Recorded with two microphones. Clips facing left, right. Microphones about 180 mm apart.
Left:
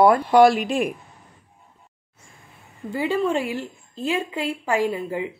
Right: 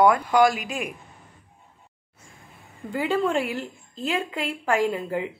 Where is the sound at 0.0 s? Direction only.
30° left (ahead or behind).